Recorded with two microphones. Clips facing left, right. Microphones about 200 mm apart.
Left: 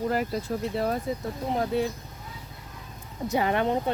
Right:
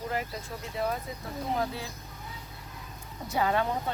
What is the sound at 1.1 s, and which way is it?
Speech, 30° left (ahead or behind).